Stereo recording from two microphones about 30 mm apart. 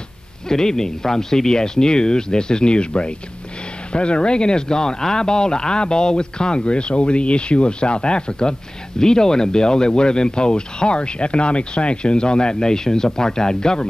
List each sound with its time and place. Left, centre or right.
0.5 s speech: centre